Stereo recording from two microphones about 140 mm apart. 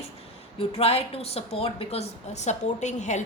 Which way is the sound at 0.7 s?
45° left (ahead or behind).